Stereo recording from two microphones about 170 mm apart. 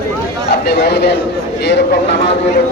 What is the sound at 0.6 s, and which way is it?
Speech, 75° left (ahead or behind).